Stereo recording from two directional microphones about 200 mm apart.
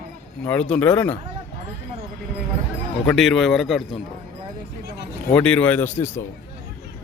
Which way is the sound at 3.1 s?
Centre (ahead or behind).